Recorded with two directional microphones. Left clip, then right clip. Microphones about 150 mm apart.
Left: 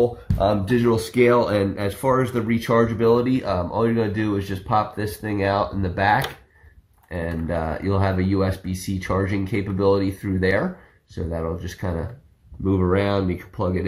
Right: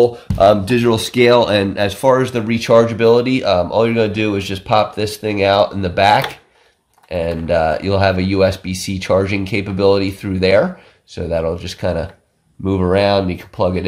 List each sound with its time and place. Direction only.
0.0 s speech: 20° right (ahead or behind)